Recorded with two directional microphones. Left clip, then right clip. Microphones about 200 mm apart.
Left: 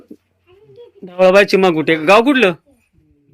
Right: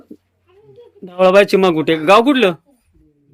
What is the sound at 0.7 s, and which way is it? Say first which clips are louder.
Speech: left 1 dB; centre (ahead or behind).